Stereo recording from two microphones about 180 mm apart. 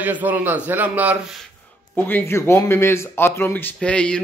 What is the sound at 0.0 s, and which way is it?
A man's voice, 10° right (ahead or behind).